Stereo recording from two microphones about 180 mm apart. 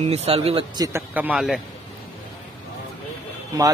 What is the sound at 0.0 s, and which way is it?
Speech, 35° right (ahead or behind).